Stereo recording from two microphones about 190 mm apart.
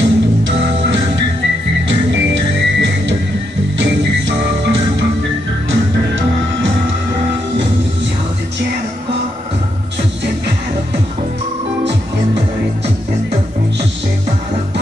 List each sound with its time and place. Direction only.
0.0 s music: 75° right (ahead or behind)